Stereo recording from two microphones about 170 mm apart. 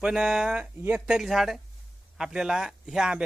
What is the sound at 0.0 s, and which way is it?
A man's voice, 5° right (ahead or behind).